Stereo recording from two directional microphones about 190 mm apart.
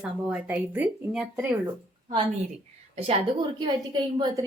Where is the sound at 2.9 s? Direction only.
30° right (ahead or behind).